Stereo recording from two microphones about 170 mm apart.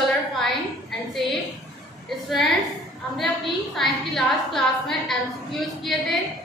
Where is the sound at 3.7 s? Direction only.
Centre (ahead or behind).